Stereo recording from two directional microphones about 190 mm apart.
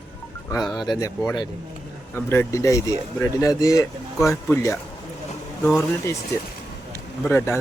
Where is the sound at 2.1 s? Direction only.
10° left (ahead or behind).